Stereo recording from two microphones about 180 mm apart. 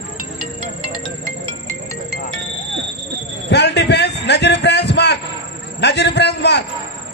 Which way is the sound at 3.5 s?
70° left (ahead or behind).